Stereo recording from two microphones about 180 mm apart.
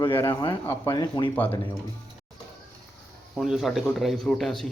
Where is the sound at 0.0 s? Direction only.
30° left (ahead or behind).